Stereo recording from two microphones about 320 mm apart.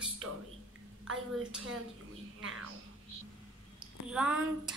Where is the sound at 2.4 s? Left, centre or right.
Right.